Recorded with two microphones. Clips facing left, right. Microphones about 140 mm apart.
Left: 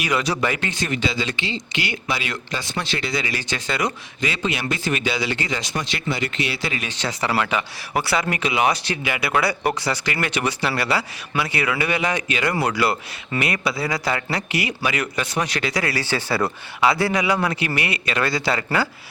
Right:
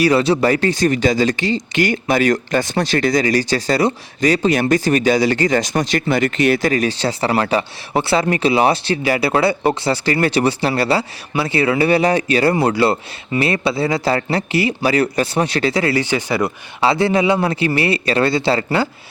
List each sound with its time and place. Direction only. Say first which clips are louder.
0.0 s speech: right 8 dB; 30° right (ahead or behind); by 16.5 s 15° right (ahead or behind)
16.8 s speech: right 5 dB; 30° right (ahead or behind)